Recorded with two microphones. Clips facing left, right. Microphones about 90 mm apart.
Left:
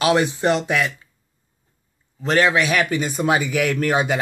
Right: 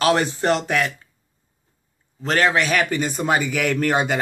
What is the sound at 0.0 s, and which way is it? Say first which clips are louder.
Speech: left 1 dB; 10° left (ahead or behind).